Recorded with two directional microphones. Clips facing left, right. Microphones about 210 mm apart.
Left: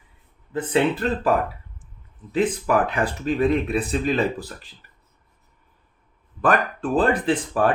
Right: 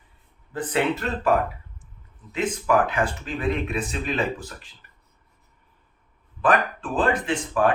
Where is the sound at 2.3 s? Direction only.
35° left (ahead or behind).